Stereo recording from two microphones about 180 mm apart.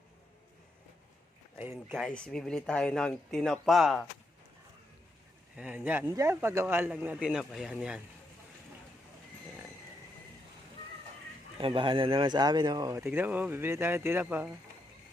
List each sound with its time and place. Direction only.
1.5 s speech: 10° right (ahead or behind)
1.9 s speech: 5° left (ahead or behind)
5.5 s a man's voice: 10° right (ahead or behind)
11.5 s a man's voice: 30° right (ahead or behind); by 14.5 s 10° right (ahead or behind)